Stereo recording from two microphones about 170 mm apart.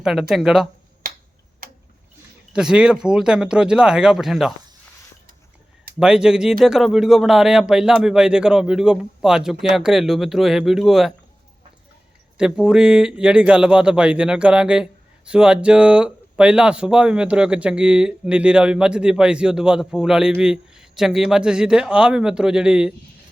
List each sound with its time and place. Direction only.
0.0 s speech: centre (ahead or behind)
1.0 s finger snapping: 55° right (ahead or behind)
2.5 s speech: 5° right (ahead or behind)
6.0 s speech: 5° right (ahead or behind)
12.4 s speech: 5° right (ahead or behind)